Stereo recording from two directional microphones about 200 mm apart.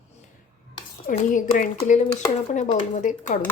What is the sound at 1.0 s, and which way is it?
Speech, 40° left (ahead or behind).